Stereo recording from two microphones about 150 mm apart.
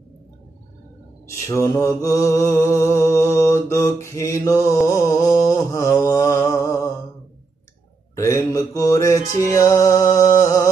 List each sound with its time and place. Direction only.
1.5 s mantra: 20° left (ahead or behind)
8.2 s mantra: 25° left (ahead or behind)